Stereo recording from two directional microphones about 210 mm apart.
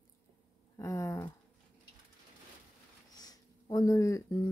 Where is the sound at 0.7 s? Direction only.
15° left (ahead or behind).